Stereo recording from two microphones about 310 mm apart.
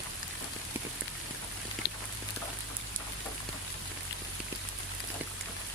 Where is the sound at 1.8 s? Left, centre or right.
Left.